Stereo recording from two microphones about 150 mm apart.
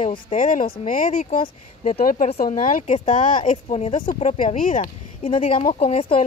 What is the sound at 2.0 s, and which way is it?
Speech, 65° left (ahead or behind).